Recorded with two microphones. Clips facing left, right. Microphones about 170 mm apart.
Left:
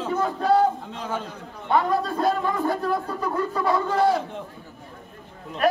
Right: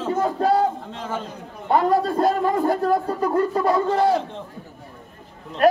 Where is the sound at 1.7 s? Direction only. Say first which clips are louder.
Right 3 dB; 40° right (ahead or behind).